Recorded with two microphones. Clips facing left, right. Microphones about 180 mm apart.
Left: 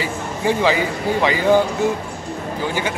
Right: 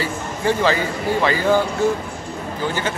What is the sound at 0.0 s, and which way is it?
A man's voice, 15° left (ahead or behind).